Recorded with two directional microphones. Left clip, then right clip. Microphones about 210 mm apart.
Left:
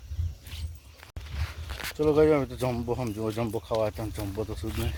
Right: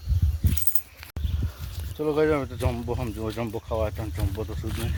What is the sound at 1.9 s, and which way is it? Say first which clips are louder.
Speech: left 1 dB; 25° left (ahead or behind).